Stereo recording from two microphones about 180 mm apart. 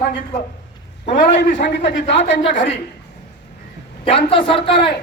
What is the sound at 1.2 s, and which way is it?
Speech, 55° left (ahead or behind).